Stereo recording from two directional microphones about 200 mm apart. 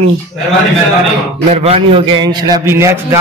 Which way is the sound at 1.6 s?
30° right (ahead or behind).